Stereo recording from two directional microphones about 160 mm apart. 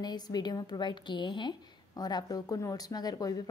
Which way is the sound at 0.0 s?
25° left (ahead or behind).